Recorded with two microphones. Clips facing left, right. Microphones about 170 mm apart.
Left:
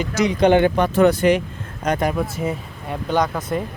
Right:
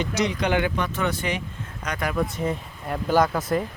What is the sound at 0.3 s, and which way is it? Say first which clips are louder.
Speech: left 9 dB; 30° left (ahead or behind).